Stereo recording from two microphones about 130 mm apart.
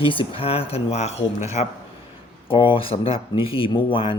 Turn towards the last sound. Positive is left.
turn(degrees=45)  # may be behind; listen again after turning